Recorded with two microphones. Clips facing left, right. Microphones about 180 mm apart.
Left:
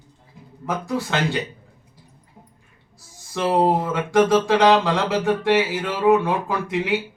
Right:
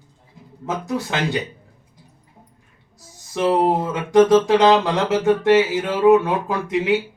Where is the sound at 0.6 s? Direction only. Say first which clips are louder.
Right 1 dB; 20° right (ahead or behind).